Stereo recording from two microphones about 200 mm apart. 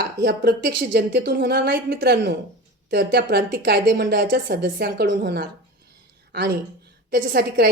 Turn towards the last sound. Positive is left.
turn(degrees=-50)  # may be behind; listen again after turning